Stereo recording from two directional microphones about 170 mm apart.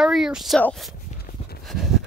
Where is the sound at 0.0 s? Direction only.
5° right (ahead or behind).